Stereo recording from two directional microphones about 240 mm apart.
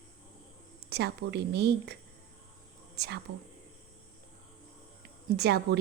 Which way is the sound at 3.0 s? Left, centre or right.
Right.